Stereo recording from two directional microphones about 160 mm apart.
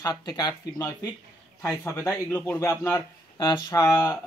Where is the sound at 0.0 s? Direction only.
25° left (ahead or behind).